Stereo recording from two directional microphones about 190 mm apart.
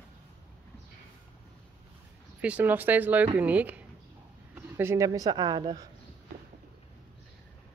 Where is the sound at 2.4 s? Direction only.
5° right (ahead or behind).